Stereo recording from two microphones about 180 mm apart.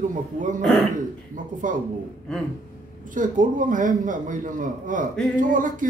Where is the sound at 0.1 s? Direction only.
45° right (ahead or behind).